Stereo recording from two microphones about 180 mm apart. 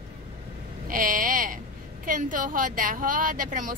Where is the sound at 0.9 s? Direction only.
50° right (ahead or behind).